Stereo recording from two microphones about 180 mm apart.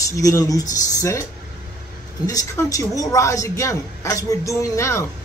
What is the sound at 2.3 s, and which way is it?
A man's voice, 20° left (ahead or behind).